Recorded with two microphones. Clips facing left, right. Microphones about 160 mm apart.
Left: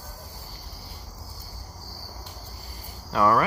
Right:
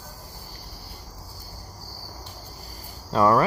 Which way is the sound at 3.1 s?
30° right (ahead or behind).